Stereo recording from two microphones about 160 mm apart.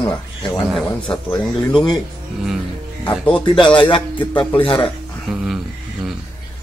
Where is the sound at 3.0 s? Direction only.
10° left (ahead or behind).